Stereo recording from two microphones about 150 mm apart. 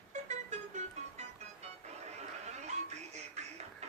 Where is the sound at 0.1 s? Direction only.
50° right (ahead or behind).